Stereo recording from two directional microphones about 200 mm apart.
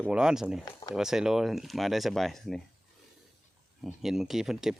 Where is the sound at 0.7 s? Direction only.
20° left (ahead or behind).